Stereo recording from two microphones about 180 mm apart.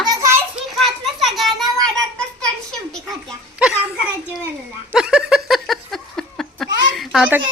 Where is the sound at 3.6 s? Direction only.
5° right (ahead or behind).